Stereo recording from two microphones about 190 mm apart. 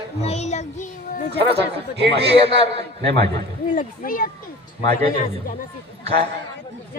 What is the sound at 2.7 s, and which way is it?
Speech, 60° right (ahead or behind).